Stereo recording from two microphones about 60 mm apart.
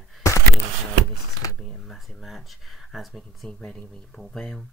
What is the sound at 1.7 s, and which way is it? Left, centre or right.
Speech, centre.